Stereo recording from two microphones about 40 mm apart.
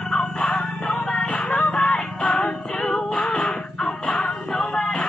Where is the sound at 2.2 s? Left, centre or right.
Left.